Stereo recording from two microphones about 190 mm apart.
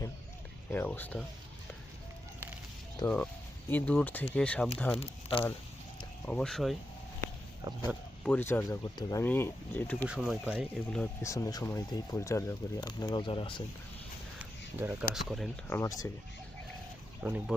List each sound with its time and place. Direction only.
0.7 s speech: 10° left (ahead or behind)
3.0 s speech: 20° left (ahead or behind)
3.7 s speech: 10° left (ahead or behind)
4.9 s speech: 25° left (ahead or behind)
6.2 s speech: 5° left (ahead or behind)
7.6 s speech: 20° right (ahead or behind)
8.2 s speech: 10° left (ahead or behind)
10.1 s speech: 5° right (ahead or behind)
11.0 s speech: 15° left (ahead or behind)
14.3 s a sound: 10° right (ahead or behind)
15.1 s speech: centre (ahead or behind)
15.6 s speech: 15° left (ahead or behind)
17.2 s speech: 10° right (ahead or behind)